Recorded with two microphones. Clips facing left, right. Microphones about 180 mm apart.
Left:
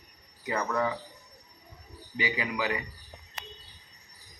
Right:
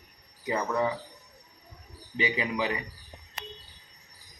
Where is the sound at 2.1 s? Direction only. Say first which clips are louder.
Right 2 dB; 25° right (ahead or behind).